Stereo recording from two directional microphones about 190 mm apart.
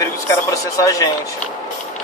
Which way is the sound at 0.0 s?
15° left (ahead or behind).